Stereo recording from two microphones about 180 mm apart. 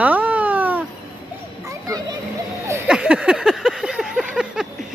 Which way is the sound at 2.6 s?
15° right (ahead or behind).